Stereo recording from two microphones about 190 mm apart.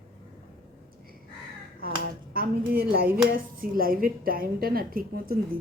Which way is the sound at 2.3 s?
50° right (ahead or behind).